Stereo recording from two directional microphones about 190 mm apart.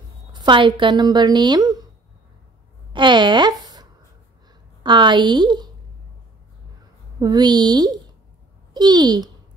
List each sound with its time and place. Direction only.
0.3 s speech: 25° right (ahead or behind)
2.9 s a sound: 25° right (ahead or behind)
4.8 s a woman's voice: 25° right (ahead or behind)
7.2 s a woman's voice: 20° right (ahead or behind)